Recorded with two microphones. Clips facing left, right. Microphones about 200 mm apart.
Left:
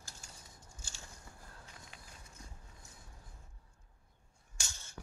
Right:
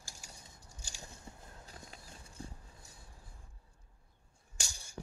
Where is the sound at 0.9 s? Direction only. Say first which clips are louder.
Right 6 dB; 20° right (ahead or behind).